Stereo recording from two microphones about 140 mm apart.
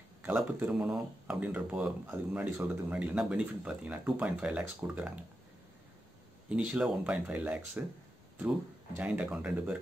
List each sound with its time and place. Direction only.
0.4 s speech: 10° right (ahead or behind)
6.5 s speech: 10° right (ahead or behind)